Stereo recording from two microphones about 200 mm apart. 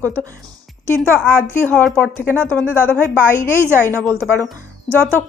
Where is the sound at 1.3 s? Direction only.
10° right (ahead or behind).